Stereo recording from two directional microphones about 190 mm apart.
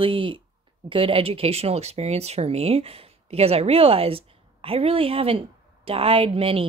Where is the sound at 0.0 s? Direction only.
25° right (ahead or behind).